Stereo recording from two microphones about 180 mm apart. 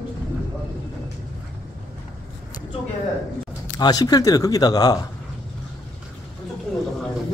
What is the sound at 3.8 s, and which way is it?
Speech, 20° left (ahead or behind).